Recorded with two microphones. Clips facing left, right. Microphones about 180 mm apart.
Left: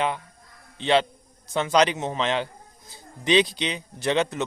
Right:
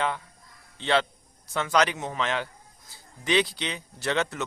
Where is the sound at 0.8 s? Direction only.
20° left (ahead or behind).